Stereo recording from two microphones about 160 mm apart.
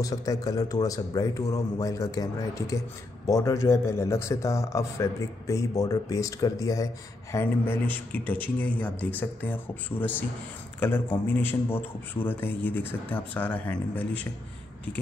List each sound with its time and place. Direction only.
0.0 s a man's voice: 20° left (ahead or behind)